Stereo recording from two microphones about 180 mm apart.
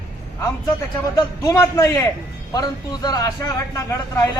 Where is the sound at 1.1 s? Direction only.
15° left (ahead or behind).